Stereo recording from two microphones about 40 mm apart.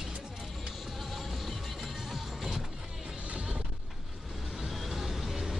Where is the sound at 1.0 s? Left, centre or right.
Centre.